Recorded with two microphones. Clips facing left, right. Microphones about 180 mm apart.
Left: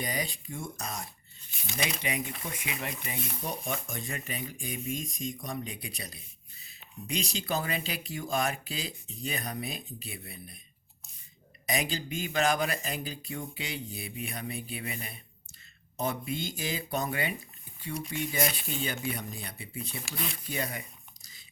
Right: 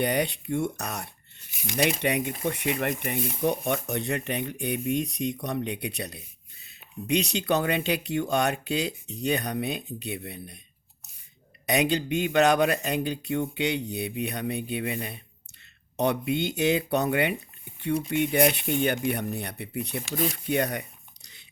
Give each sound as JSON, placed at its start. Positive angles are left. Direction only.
{"t": 0.0, "sound": "speech", "side_deg": -70}
{"t": 1.6, "sound": "speech", "side_deg": -90}
{"t": 1.9, "sound": "speech", "side_deg": -65}
{"t": 2.6, "sound": "speech", "side_deg": -55}
{"t": 11.7, "sound": "speech", "side_deg": -65}
{"t": 16.0, "sound": "speech", "side_deg": -70}
{"t": 20.1, "sound": "speech", "side_deg": -45}
{"t": 20.5, "sound": "speech", "side_deg": -65}